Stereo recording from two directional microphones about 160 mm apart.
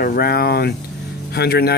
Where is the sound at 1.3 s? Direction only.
90° left.